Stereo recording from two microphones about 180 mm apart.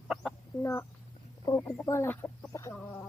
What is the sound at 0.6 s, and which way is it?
Speech, 15° left (ahead or behind).